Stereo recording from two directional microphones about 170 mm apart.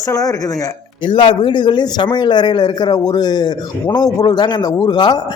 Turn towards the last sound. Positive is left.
turn(degrees=25)  # may be behind; listen again after turning